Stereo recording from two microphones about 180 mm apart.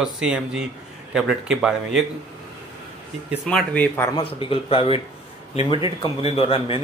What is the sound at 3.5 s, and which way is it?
Speech, 10° left (ahead or behind).